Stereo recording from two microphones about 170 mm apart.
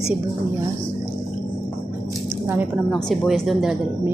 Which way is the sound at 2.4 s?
10° right (ahead or behind).